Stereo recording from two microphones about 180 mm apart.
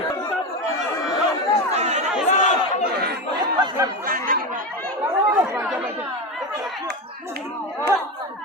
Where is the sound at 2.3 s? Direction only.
40° left (ahead or behind).